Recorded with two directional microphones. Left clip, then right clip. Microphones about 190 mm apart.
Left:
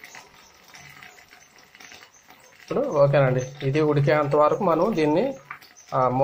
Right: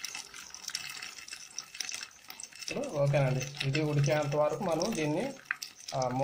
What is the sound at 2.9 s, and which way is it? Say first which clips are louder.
Speech: left 11 dB; 15° left (ahead or behind).